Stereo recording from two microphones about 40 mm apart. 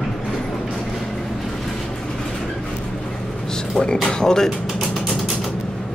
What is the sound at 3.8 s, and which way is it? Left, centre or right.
Speech, centre.